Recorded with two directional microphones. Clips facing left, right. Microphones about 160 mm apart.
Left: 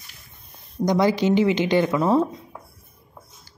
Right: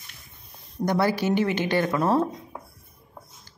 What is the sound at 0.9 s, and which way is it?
A woman's voice, 15° left (ahead or behind).